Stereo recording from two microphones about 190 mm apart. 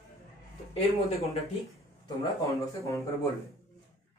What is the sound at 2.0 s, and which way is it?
Speech, 15° left (ahead or behind).